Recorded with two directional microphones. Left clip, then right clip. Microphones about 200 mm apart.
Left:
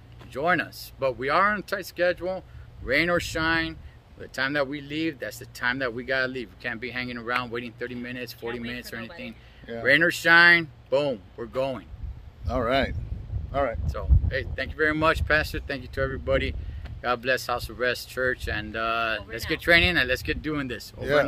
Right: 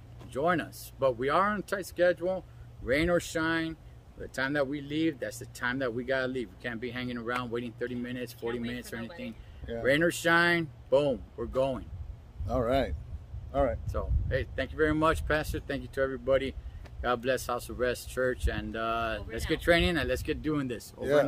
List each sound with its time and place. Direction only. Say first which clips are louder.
0.3 s speech: left 4 dB; 15° right (ahead or behind)
12.4 s speech: left 4 dB; 5° left (ahead or behind)
13.8 s speech: left 2 dB; 20° right (ahead or behind)